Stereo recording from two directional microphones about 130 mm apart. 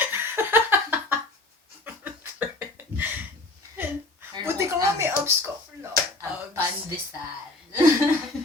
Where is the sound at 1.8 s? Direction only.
10° right (ahead or behind).